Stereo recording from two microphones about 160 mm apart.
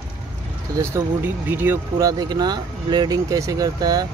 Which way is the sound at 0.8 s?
15° right (ahead or behind).